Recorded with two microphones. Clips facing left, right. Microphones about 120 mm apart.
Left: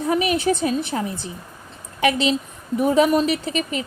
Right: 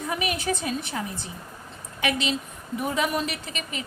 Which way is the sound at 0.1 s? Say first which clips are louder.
Left 8 dB; 35° left (ahead or behind).